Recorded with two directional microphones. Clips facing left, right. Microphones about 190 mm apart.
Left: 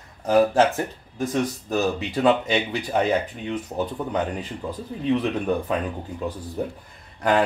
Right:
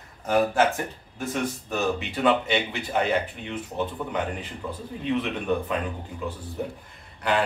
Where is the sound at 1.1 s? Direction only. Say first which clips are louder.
Left 4 dB; 35° left (ahead or behind).